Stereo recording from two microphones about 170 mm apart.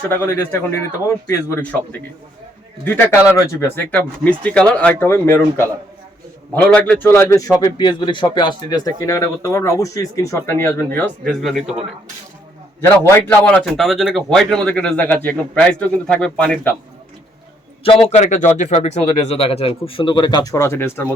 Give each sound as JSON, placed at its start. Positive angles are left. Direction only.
{"t": 0.1, "sound": "speech", "side_deg": 15}
{"t": 7.6, "sound": "speech", "side_deg": 25}
{"t": 11.4, "sound": "a man's voice", "side_deg": 0}
{"t": 12.8, "sound": "a man's voice", "side_deg": 10}
{"t": 17.8, "sound": "a man's voice", "side_deg": 35}